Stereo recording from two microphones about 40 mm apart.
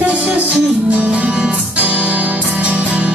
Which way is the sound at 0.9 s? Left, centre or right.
Right.